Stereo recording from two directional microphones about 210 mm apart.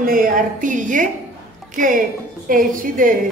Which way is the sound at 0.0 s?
40° right (ahead or behind).